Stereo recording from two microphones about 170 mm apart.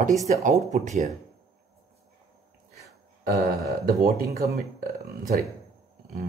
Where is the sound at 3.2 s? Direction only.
60° right (ahead or behind).